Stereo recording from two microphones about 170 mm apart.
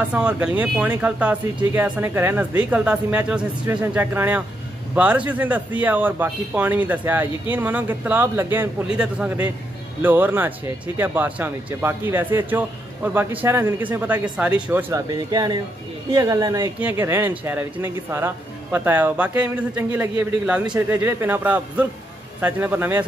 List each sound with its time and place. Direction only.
0.0 s a man's voice: 10° right (ahead or behind)